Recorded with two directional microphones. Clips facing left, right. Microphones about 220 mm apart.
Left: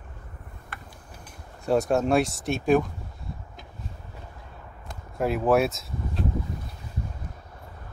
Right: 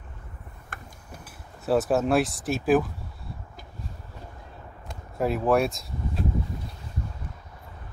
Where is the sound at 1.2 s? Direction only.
5° right (ahead or behind).